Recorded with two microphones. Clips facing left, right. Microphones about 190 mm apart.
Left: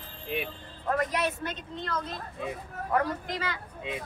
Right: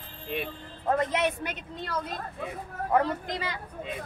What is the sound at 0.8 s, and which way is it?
Speech, 25° right (ahead or behind).